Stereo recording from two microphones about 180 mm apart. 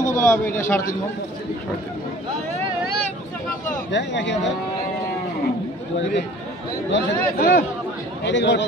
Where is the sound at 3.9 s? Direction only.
80° left.